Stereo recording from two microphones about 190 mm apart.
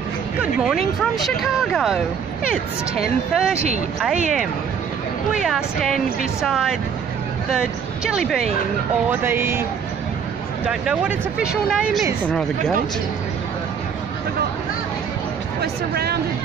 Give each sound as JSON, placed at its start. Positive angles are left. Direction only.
{"t": 1.1, "sound": "speech", "side_deg": 0}
{"t": 5.3, "sound": "speech", "side_deg": 0}
{"t": 10.7, "sound": "speech", "side_deg": -5}
{"t": 15.6, "sound": "speech", "side_deg": -55}